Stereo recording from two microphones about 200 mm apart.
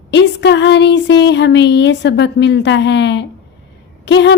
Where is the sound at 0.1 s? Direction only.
60° left (ahead or behind).